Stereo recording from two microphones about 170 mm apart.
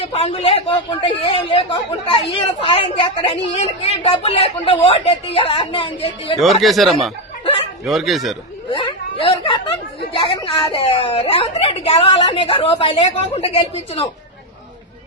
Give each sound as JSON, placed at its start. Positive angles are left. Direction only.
{"t": 0.0, "sound": "a woman's voice", "side_deg": 35}
{"t": 6.4, "sound": "speech", "side_deg": 0}
{"t": 9.2, "sound": "chatter", "side_deg": 30}
{"t": 10.2, "sound": "a woman's voice", "side_deg": 30}